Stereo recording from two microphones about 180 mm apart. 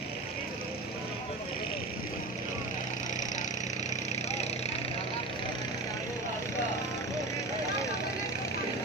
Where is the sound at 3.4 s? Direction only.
40° left (ahead or behind).